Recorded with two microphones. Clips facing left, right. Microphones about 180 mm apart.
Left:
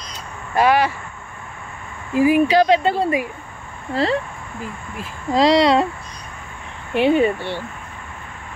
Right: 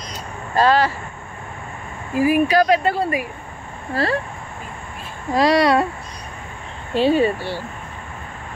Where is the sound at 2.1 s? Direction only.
20° left (ahead or behind).